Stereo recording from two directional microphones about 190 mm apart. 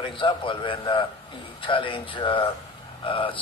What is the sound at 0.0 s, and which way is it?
A man's voice, 25° left (ahead or behind).